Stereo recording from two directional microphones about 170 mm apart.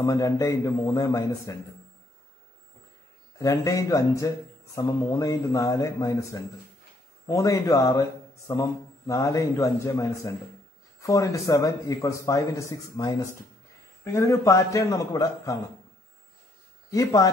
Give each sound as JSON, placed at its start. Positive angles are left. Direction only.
{"t": 0.0, "sound": "a man's voice", "side_deg": 20}
{"t": 3.3, "sound": "a man's voice", "side_deg": 20}
{"t": 16.9, "sound": "a man's voice", "side_deg": 20}